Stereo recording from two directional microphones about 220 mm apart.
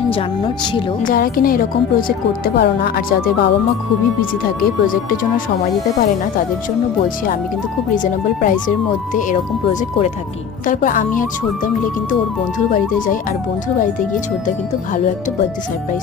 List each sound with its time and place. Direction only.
1.0 s a woman's voice: 40° left (ahead or behind)
7.9 s a woman's voice: 35° left (ahead or behind)